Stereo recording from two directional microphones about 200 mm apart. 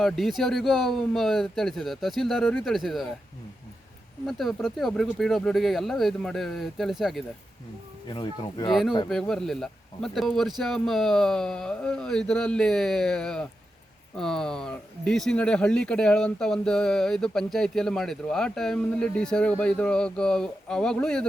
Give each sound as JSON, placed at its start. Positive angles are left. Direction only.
{"t": 0.0, "sound": "speech", "side_deg": 0}
{"t": 4.3, "sound": "speech", "side_deg": 0}
{"t": 8.0, "sound": "speech", "side_deg": 25}
{"t": 9.0, "sound": "speech", "side_deg": 0}